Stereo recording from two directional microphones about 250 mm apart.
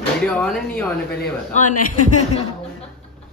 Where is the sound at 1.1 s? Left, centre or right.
Left.